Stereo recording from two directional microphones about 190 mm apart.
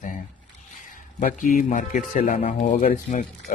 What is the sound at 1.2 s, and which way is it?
Speech, 45° left (ahead or behind).